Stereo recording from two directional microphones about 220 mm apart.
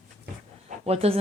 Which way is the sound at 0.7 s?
30° right (ahead or behind).